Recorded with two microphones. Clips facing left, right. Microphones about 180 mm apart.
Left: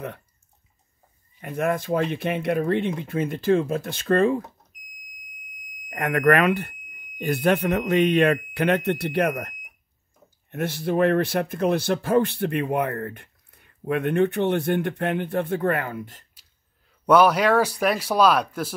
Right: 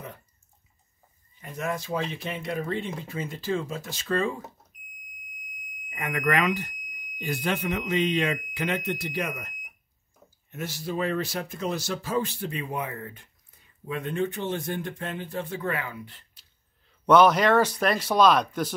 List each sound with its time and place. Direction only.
1.4 s speech: 60° left (ahead or behind)
5.9 s speech: 65° left (ahead or behind); by 16.3 s 45° left (ahead or behind)
17.0 s speech: 10° left (ahead or behind)